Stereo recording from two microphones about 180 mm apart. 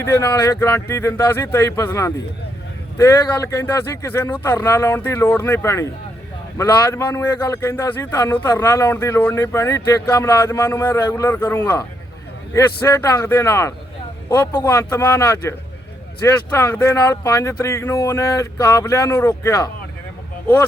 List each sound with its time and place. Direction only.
0.0 s a man's voice: 15° left (ahead or behind)